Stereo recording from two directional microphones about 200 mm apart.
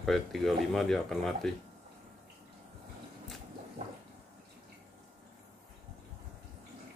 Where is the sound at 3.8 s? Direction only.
30° right (ahead or behind).